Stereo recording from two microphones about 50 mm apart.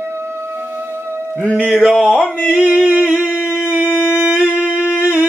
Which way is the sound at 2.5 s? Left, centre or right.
Right.